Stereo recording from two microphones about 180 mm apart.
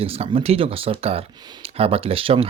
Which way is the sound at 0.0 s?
30° right (ahead or behind).